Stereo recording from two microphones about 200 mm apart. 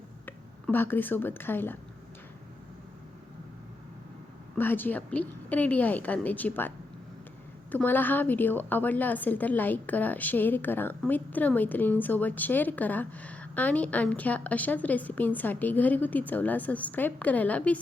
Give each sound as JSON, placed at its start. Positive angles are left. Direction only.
{"t": 0.3, "sound": "speech", "side_deg": 10}
{"t": 4.5, "sound": "a woman's voice", "side_deg": 10}